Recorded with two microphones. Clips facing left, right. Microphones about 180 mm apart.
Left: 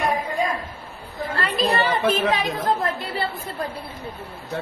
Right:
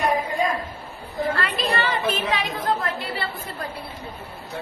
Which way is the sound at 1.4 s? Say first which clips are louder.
Left 3 dB; 40° left (ahead or behind).